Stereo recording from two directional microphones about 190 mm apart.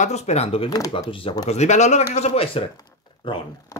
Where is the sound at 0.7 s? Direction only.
20° left (ahead or behind).